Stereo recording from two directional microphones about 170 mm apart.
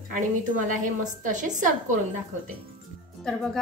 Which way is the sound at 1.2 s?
45° right (ahead or behind).